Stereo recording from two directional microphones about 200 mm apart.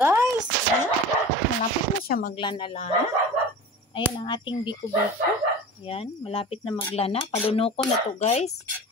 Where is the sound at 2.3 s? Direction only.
25° left (ahead or behind).